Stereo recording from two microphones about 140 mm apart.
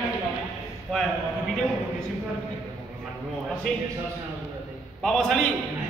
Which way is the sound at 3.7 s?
5° left (ahead or behind).